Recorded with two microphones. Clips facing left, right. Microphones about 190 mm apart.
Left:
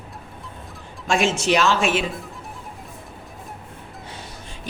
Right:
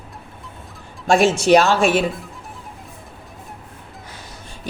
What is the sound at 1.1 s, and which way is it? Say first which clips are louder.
Speech: right 6 dB; 35° right (ahead or behind).